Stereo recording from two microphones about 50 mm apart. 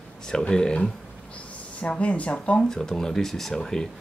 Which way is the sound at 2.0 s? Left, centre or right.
Left.